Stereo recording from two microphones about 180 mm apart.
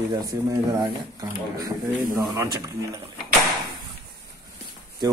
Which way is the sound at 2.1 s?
20° right (ahead or behind).